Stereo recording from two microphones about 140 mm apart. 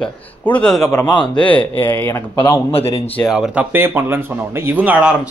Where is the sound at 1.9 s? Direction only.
15° left (ahead or behind).